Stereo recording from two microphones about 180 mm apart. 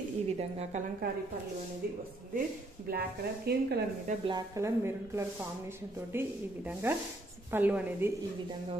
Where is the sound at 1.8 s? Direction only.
55° right (ahead or behind).